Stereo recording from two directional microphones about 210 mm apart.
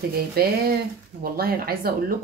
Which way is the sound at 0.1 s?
45° right (ahead or behind).